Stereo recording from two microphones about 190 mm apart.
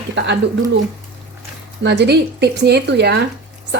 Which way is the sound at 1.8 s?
65° right (ahead or behind).